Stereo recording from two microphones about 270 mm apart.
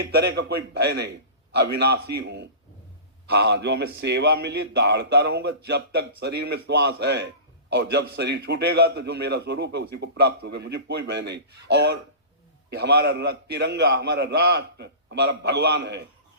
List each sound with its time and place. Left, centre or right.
0.0 s a man's voice: right